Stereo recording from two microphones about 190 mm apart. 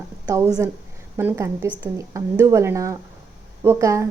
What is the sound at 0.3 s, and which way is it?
A woman's voice, 15° right (ahead or behind).